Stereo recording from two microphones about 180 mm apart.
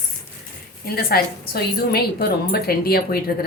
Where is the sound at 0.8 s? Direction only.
60° left (ahead or behind).